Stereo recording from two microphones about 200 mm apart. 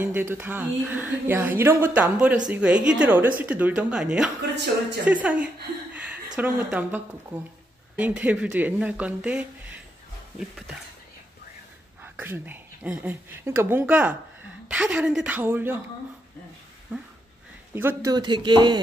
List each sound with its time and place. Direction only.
0.0 s speech: 10° right (ahead or behind)
12.0 s speech: 10° right (ahead or behind)
16.9 s speech: 10° right (ahead or behind); by 18.8 s 25° right (ahead or behind)